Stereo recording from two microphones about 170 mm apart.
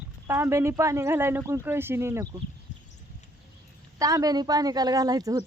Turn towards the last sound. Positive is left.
turn(degrees=-20)  # may be behind; listen again after turning